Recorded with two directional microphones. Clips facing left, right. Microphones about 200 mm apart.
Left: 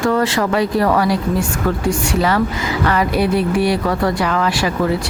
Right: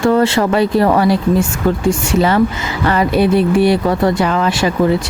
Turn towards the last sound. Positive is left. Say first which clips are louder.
# right 3 dB
turn(degrees=-25)  # may be behind; listen again after turning